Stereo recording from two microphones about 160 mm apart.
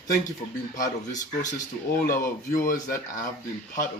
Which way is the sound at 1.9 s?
60° left (ahead or behind).